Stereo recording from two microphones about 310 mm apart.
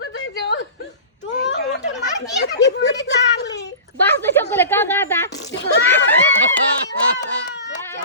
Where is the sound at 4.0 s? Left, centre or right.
Centre.